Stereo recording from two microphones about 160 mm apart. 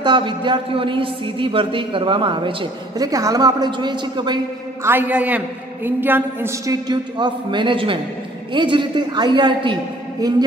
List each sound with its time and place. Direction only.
0.0 s a man's voice: 30° right (ahead or behind)
4.8 s a man's voice: 10° right (ahead or behind); by 9.8 s 30° right (ahead or behind)